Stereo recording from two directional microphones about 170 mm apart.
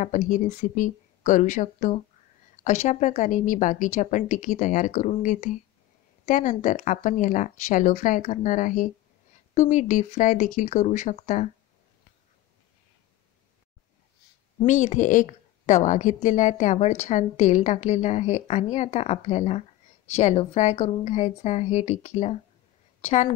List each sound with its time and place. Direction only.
0.0 s a woman's voice: 45° left (ahead or behind)
14.7 s a woman's voice: 45° left (ahead or behind)
22.9 s a sound: 40° left (ahead or behind)